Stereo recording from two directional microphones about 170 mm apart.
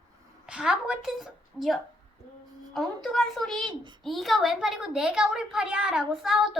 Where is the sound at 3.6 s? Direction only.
30° right (ahead or behind).